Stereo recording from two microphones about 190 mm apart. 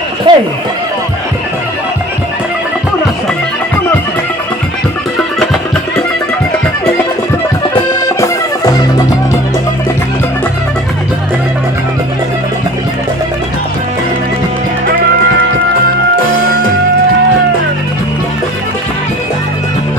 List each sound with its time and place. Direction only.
0.3 s run: 25° right (ahead or behind)
7.7 s accordion: 20° left (ahead or behind)